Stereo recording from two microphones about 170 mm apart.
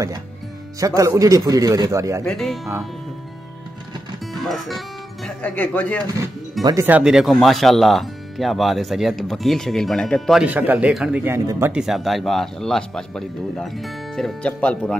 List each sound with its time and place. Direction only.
0.7 s speech: 20° right (ahead or behind)
2.2 s speech: centre (ahead or behind)
4.3 s speech: centre (ahead or behind)
6.6 s speech: 15° right (ahead or behind); by 10.4 s 5° left (ahead or behind)
10.4 s speech: 10° right (ahead or behind)
11.7 s speech: centre (ahead or behind)